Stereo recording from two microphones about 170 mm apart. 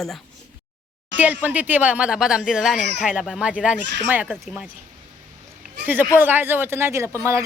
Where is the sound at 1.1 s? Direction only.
10° right (ahead or behind).